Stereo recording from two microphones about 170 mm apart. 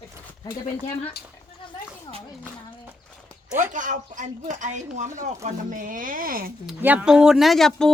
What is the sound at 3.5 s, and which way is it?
Speech, 45° right (ahead or behind).